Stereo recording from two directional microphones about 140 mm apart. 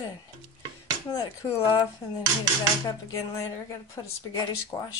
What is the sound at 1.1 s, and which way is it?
Speech, 25° left (ahead or behind).